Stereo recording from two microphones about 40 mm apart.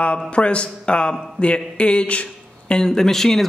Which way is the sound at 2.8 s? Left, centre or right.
Centre.